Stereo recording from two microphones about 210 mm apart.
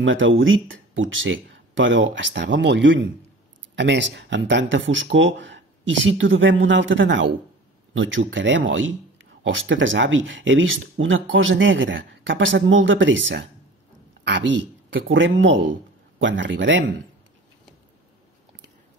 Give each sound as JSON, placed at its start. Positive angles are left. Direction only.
{"t": 0.0, "sound": "speech", "side_deg": -65}